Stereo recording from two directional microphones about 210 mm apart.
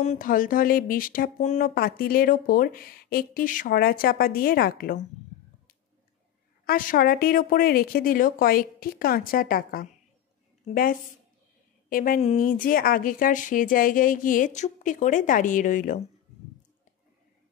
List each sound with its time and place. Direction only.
0.0 s speech: 35° left (ahead or behind)
6.6 s a woman's voice: 45° left (ahead or behind)